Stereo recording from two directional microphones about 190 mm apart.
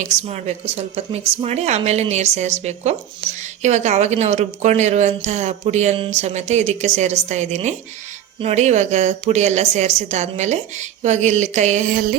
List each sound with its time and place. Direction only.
0.0 s a woman's voice: 35° right (ahead or behind)